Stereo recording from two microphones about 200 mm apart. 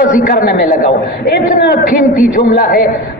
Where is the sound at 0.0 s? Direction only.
45° left (ahead or behind).